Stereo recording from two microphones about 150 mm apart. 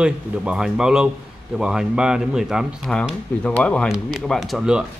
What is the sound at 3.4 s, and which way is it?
Speech, 5° left (ahead or behind).